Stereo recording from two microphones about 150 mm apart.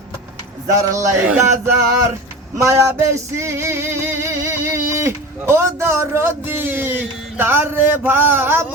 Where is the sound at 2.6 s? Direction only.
20° right (ahead or behind).